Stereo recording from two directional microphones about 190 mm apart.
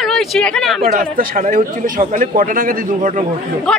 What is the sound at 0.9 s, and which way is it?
A man's voice, 45° right (ahead or behind).